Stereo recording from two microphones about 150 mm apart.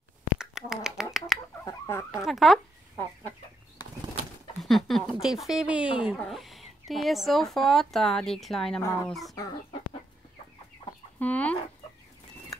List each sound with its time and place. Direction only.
0.4 s finger snapping: 5° right (ahead or behind)
1.7 s fowl: 15° left (ahead or behind)
2.2 s speech: centre (ahead or behind)
4.6 s speech: centre (ahead or behind)
11.1 s speech: 10° left (ahead or behind)